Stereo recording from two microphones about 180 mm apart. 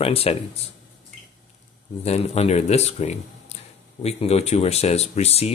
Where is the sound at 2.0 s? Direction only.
35° left (ahead or behind).